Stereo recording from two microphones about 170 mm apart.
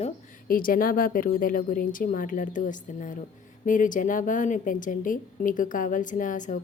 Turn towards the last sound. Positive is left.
turn(degrees=50)  # may be behind; listen again after turning